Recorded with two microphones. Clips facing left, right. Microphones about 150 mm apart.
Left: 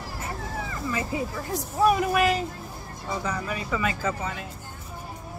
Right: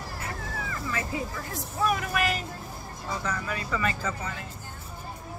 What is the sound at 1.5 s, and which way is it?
Speech, 30° left (ahead or behind).